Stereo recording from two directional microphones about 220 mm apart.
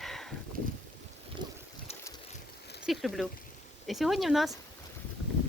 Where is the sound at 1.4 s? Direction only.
20° right (ahead or behind).